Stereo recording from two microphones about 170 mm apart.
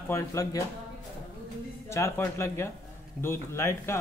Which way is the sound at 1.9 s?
15° left (ahead or behind).